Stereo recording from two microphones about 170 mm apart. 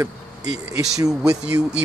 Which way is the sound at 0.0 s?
20° right (ahead or behind).